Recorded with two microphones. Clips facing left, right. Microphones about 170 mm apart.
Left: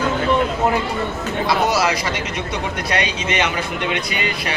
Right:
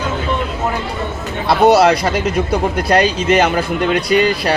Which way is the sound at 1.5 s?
60° right (ahead or behind).